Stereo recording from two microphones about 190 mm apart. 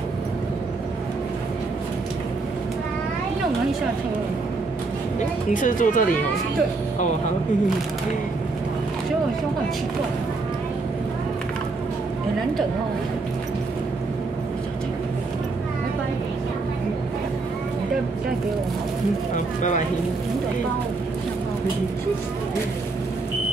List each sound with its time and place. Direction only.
5.5 s speech: 45° left (ahead or behind)
19.3 s speech: 40° left (ahead or behind)